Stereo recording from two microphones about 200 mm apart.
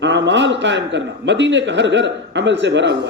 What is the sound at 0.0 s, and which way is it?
A man's voice, 65° right (ahead or behind).